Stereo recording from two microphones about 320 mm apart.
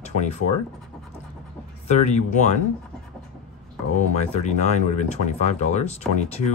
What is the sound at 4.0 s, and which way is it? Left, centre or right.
Speech, left.